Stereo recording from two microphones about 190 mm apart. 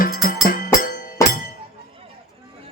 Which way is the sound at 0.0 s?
45° left (ahead or behind).